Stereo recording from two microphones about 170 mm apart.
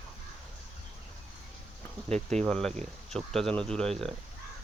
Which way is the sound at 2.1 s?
40° right (ahead or behind).